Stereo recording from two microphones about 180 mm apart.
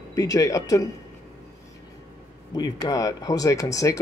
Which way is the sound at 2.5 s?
20° left (ahead or behind).